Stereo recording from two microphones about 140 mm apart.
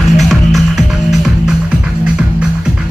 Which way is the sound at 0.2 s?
Centre (ahead or behind).